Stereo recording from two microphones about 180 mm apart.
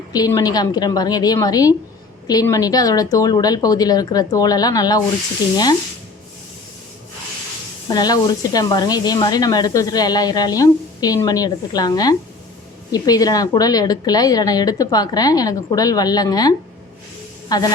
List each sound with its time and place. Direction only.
0.1 s speech: 20° left (ahead or behind)
7.9 s speech: 20° left (ahead or behind)